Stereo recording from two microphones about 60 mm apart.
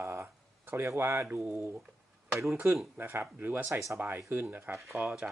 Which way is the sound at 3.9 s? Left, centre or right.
Right.